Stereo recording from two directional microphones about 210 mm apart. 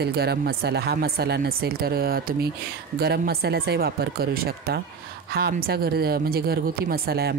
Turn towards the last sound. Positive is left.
turn(degrees=-50)  # may be behind; listen again after turning